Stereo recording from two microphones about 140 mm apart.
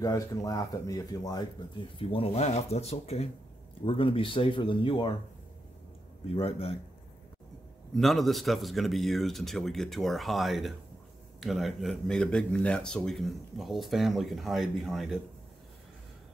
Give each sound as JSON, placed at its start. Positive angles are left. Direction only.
{"t": 0.0, "sound": "speech", "side_deg": 25}
{"t": 2.0, "sound": "speech", "side_deg": 40}
{"t": 6.2, "sound": "speech", "side_deg": 45}
{"t": 7.9, "sound": "speech", "side_deg": 0}